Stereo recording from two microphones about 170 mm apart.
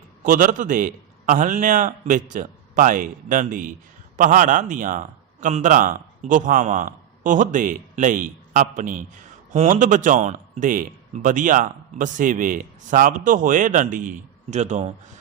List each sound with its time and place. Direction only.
0.2 s a man's voice: 50° right (ahead or behind)